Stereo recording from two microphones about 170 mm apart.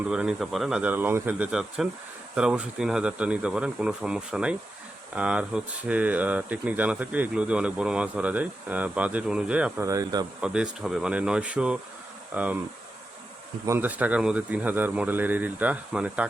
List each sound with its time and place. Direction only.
0.1 s speech: 5° right (ahead or behind)
9.8 s speech: 20° right (ahead or behind)
10.4 s speech: 5° right (ahead or behind)
13.7 s speech: 10° right (ahead or behind)